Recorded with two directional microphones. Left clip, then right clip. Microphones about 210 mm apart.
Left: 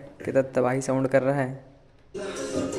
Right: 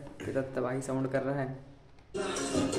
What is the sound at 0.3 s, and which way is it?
A man's voice, 35° left (ahead or behind).